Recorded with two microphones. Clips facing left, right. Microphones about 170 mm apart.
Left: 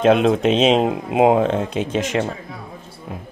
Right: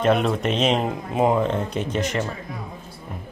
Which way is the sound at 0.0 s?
90° left.